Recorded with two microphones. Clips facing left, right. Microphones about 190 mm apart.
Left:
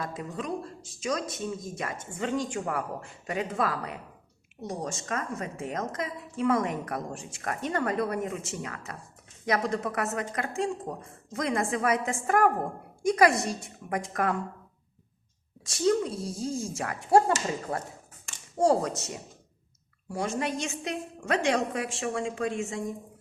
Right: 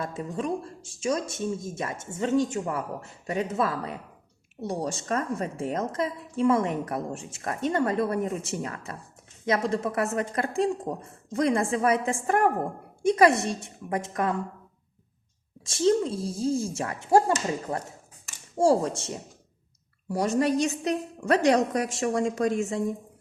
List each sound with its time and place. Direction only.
0.0 s a woman's voice: 25° right (ahead or behind)
15.6 s a woman's voice: 25° right (ahead or behind)